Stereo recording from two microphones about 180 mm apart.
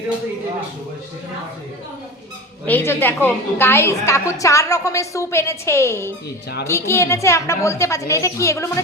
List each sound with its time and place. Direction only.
2.6 s a woman's voice: 10° left (ahead or behind)